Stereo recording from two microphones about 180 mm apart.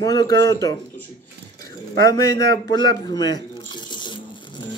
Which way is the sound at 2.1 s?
20° left (ahead or behind).